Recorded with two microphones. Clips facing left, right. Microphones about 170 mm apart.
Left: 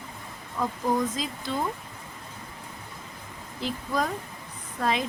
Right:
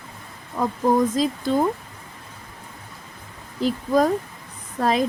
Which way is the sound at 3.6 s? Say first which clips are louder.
Right 9 dB; 45° right (ahead or behind).